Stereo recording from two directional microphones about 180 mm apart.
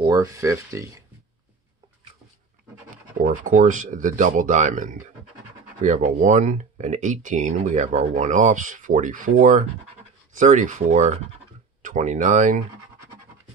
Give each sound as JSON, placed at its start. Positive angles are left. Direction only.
{"t": 0.0, "sound": "speech", "side_deg": -20}
{"t": 3.2, "sound": "speech", "side_deg": -45}